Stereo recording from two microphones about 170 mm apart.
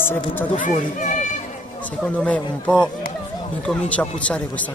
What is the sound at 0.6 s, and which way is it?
Speech, 50° left (ahead or behind).